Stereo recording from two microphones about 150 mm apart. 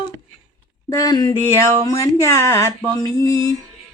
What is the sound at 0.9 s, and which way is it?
Speech, 25° left (ahead or behind).